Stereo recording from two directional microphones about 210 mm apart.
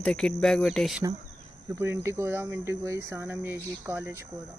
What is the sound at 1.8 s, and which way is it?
Speech, 10° right (ahead or behind).